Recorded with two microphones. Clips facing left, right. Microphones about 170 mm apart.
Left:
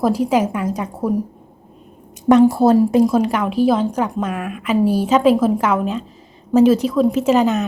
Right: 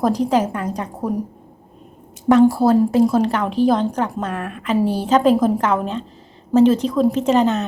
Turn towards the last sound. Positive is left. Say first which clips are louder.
# left 1 dB
turn(degrees=10)  # may be behind; listen again after turning